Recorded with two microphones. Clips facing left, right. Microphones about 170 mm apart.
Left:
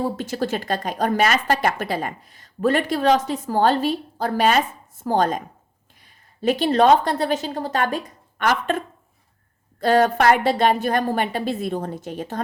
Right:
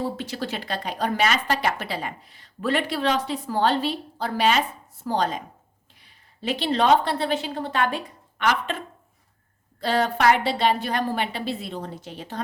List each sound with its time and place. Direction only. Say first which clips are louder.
0.0 s a woman's voice: left 4 dB; 45° left (ahead or behind)
9.8 s speech: left 4 dB; 45° left (ahead or behind)